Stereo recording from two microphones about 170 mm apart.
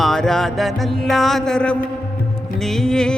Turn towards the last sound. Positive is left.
turn(degrees=5)  # may be behind; listen again after turning